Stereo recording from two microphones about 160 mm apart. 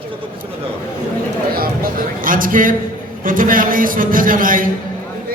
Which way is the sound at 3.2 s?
60° right (ahead or behind).